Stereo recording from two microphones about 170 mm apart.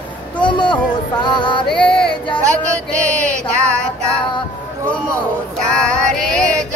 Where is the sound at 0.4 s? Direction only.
25° left (ahead or behind).